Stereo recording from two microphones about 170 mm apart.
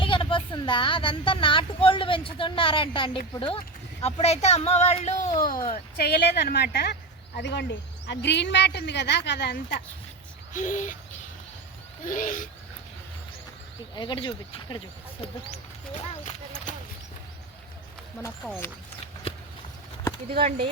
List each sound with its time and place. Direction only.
0.0 s speech: 30° left (ahead or behind)
5.4 s speech: 55° left (ahead or behind)
7.3 s speech: 85° left
10.5 s owl: 50° left (ahead or behind)
12.0 s owl: 50° left (ahead or behind)
13.9 s speech: 25° left (ahead or behind)
15.9 s speech: 35° left (ahead or behind)